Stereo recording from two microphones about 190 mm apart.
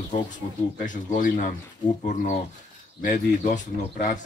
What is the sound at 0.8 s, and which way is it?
Speech, 40° left (ahead or behind).